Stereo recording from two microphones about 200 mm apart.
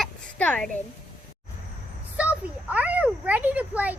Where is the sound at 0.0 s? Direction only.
5° left (ahead or behind).